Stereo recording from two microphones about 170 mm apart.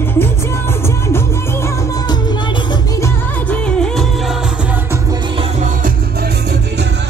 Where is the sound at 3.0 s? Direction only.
5° left (ahead or behind).